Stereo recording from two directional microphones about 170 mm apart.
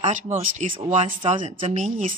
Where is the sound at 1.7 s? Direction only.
45° right (ahead or behind).